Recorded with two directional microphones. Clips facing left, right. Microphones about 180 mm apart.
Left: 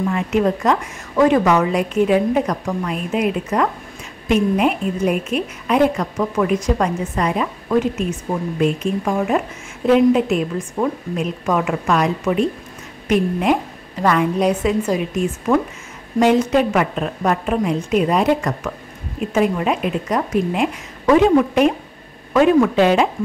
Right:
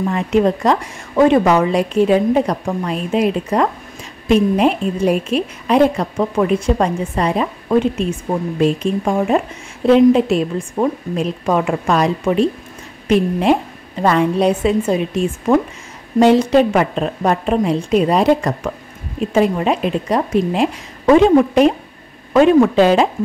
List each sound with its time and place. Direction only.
0.0 s a woman's voice: 30° right (ahead or behind)